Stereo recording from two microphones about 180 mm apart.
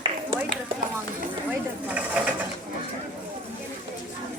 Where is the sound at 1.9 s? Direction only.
5° right (ahead or behind).